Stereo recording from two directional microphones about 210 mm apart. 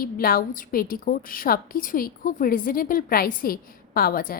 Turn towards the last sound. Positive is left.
turn(degrees=45)  # may be behind; listen again after turning